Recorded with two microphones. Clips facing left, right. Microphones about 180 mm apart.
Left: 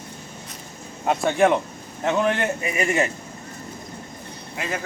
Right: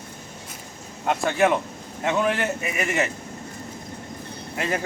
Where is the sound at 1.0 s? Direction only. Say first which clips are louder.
Left 2 dB; centre (ahead or behind).